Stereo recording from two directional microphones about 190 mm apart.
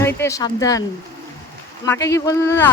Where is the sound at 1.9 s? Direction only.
15° left (ahead or behind).